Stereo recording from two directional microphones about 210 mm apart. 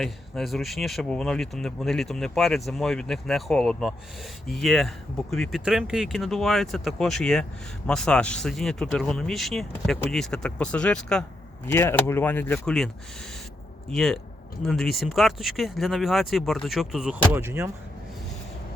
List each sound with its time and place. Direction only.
0.0 s speech: centre (ahead or behind)
13.9 s speech: centre (ahead or behind)